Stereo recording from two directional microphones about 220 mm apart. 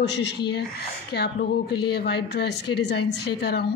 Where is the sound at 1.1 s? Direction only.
50° left (ahead or behind).